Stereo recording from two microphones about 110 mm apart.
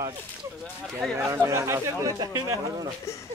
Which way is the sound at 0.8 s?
Centre (ahead or behind).